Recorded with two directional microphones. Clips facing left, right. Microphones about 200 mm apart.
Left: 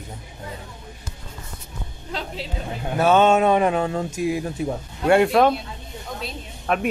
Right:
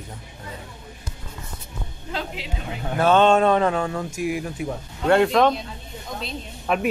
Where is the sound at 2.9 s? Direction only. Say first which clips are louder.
Even; 10° left (ahead or behind); by 4.7 s 30° left (ahead or behind).